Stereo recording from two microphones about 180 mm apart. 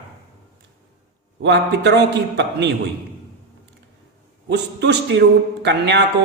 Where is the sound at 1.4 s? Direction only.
75° right (ahead or behind).